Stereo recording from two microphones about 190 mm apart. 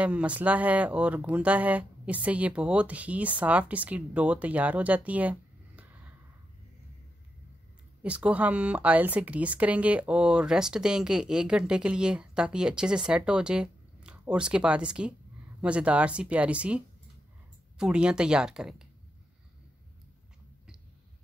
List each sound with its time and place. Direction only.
0.0 s speech: 5° right (ahead or behind)
8.0 s speech: 5° right (ahead or behind)